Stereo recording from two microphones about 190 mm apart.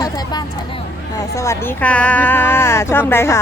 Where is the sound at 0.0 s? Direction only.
20° left (ahead or behind).